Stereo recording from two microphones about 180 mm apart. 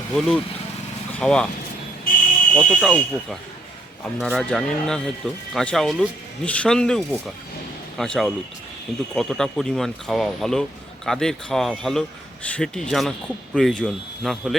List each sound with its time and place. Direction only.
0.1 s speech: 5° left (ahead or behind)
2.1 s a sound: 50° left (ahead or behind)
2.6 s speech: 5° left (ahead or behind)